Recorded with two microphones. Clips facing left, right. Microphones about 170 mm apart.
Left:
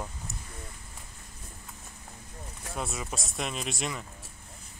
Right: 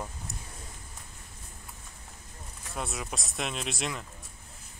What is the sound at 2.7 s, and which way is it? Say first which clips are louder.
Speech: left 1 dB; centre (ahead or behind).